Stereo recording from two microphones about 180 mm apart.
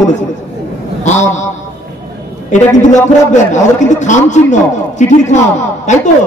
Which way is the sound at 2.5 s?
40° left (ahead or behind).